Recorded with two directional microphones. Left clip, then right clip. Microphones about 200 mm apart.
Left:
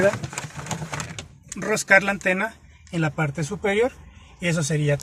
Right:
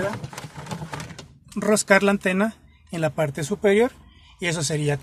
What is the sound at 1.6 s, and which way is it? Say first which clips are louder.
Speech: even; 55° right (ahead or behind).